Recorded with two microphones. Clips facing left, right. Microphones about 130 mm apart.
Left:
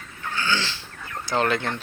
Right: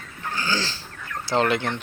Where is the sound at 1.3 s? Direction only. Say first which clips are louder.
Right 2 dB; 20° right (ahead or behind).